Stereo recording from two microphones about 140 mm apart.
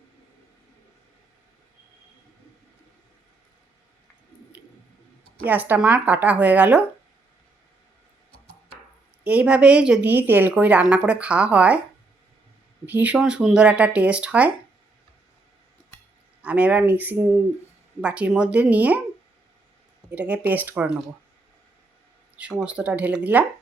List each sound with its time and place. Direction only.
5.5 s a woman's voice: 10° right (ahead or behind)
9.2 s a woman's voice: 10° right (ahead or behind)
12.8 s a woman's voice: 10° right (ahead or behind)
16.4 s a woman's voice: 10° right (ahead or behind)
20.1 s a woman's voice: 10° right (ahead or behind)
22.4 s a woman's voice: 10° right (ahead or behind)